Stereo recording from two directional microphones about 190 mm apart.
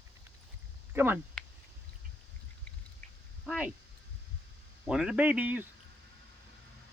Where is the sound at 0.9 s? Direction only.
10° right (ahead or behind).